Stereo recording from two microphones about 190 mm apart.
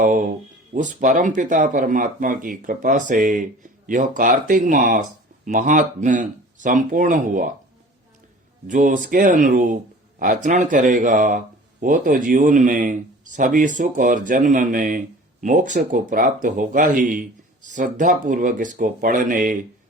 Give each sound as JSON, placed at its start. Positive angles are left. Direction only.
{"t": 0.0, "sound": "a sound", "side_deg": -45}
{"t": 0.7, "sound": "speech", "side_deg": -40}
{"t": 8.6, "sound": "speech", "side_deg": -45}